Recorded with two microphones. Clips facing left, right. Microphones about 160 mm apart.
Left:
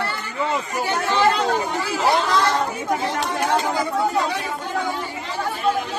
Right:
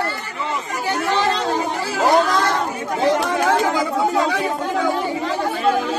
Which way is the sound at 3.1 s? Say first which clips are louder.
Right 4 dB; 90° right.